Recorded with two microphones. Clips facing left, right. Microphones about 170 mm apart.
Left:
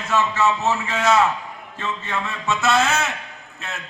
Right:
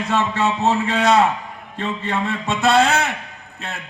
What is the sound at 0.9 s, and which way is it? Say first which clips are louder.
Speech: right 2 dB; 35° right (ahead or behind).